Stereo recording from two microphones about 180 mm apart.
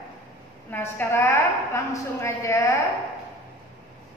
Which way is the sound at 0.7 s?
10° left (ahead or behind).